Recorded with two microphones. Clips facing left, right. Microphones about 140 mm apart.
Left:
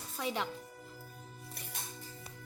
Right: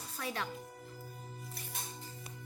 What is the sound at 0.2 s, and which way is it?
Speech, 20° left (ahead or behind).